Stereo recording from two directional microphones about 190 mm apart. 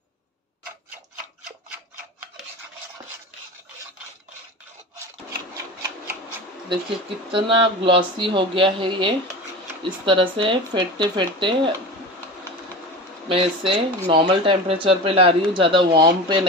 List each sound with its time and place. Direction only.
7.3 s speech: 25° right (ahead or behind)
13.3 s speech: 30° right (ahead or behind)